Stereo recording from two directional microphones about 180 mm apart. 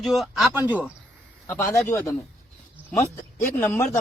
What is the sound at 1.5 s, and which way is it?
Speech, 15° left (ahead or behind).